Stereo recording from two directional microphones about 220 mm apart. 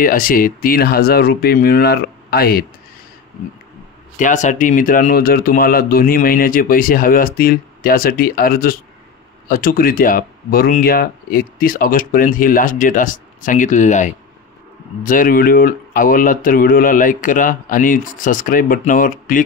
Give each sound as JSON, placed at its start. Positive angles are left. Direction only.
{"t": 0.0, "sound": "speech", "side_deg": 40}
{"t": 4.2, "sound": "speech", "side_deg": 35}